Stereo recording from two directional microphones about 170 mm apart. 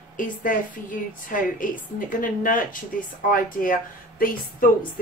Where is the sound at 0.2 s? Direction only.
55° left (ahead or behind).